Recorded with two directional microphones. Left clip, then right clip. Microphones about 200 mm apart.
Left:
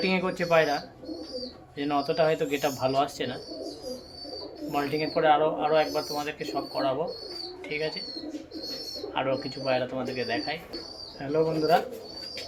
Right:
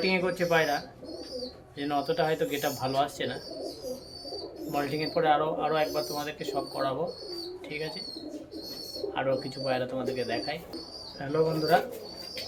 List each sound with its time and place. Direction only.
0.0 s speech: 20° left (ahead or behind)
1.8 s speech: 20° left (ahead or behind)
4.7 s speech: 5° left (ahead or behind)
9.1 s speech: centre (ahead or behind)